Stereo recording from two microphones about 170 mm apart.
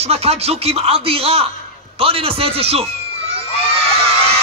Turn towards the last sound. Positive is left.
turn(degrees=-35)  # may be behind; listen again after turning